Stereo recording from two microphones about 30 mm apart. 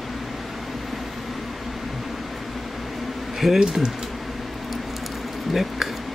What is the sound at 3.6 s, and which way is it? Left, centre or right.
Speech, right.